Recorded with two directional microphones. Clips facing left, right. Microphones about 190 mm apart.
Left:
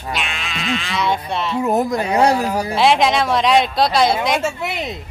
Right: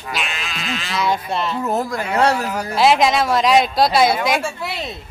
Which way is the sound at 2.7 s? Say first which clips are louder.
Right 1 dB; centre (ahead or behind).